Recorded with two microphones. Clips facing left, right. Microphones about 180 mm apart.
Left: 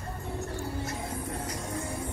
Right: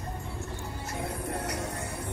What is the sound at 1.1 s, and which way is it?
Music, 65° right (ahead or behind).